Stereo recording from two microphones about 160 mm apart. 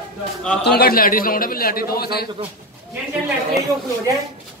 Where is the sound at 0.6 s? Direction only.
75° left (ahead or behind).